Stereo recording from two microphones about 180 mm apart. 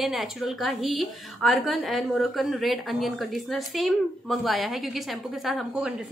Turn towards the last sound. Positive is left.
turn(degrees=0)  # may be behind; listen again after turning